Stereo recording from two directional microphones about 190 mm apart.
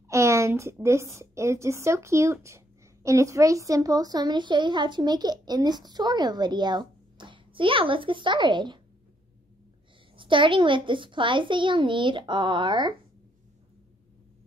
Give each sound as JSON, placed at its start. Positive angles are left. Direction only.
{"t": 0.1, "sound": "a woman's voice", "side_deg": -15}
{"t": 10.1, "sound": "a woman's voice", "side_deg": -25}